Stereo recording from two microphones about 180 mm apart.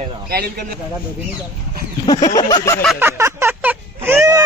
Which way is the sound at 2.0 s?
20° left (ahead or behind).